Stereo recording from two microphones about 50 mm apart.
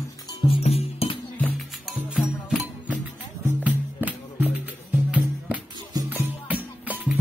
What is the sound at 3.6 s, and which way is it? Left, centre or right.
Music, right.